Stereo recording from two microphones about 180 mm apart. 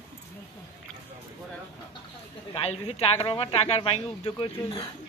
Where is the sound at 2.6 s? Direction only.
35° left (ahead or behind).